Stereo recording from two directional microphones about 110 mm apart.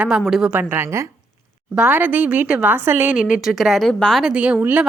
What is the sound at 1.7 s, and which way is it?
A woman's voice, 15° right (ahead or behind).